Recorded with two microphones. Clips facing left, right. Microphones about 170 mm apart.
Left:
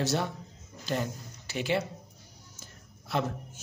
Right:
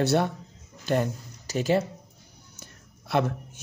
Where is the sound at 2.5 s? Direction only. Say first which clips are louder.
Right 2 dB; 65° right (ahead or behind).